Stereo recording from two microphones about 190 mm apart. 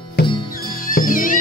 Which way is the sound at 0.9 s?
45° left (ahead or behind).